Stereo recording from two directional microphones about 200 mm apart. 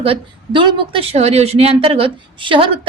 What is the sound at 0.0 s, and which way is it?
A woman's voice, 25° right (ahead or behind).